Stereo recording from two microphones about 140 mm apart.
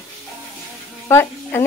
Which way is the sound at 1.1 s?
15° left (ahead or behind).